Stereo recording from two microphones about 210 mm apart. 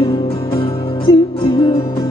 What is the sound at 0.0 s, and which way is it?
Music, 25° left (ahead or behind).